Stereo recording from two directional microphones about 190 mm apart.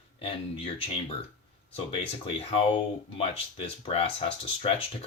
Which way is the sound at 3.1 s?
30° left (ahead or behind).